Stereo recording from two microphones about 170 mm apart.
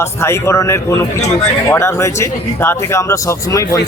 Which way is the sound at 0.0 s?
15° left (ahead or behind).